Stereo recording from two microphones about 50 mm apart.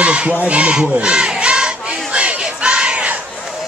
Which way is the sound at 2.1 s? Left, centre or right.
Right.